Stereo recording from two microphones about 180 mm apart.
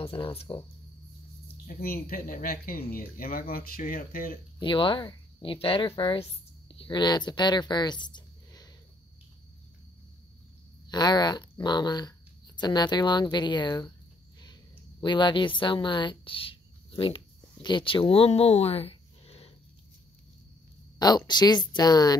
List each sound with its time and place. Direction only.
0.0 s speech: 30° left (ahead or behind)
1.7 s speech: 55° left (ahead or behind)
4.6 s speech: 30° left (ahead or behind)
10.9 s speech: 25° left (ahead or behind)
14.4 s a sound: 25° left (ahead or behind)
21.0 s speech: 25° left (ahead or behind)